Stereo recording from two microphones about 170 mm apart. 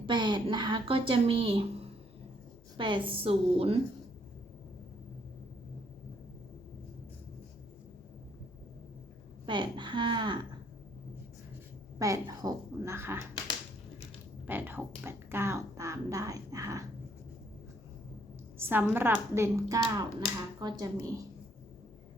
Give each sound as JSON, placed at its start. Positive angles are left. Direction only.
{"t": 0.0, "sound": "speech", "side_deg": -25}
{"t": 9.5, "sound": "a woman's voice", "side_deg": -25}
{"t": 11.9, "sound": "a woman's voice", "side_deg": -20}
{"t": 14.4, "sound": "speech", "side_deg": -10}
{"t": 18.5, "sound": "a woman's voice", "side_deg": -10}